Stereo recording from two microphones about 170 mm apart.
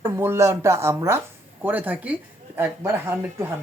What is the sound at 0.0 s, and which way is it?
Speech, 15° right (ahead or behind).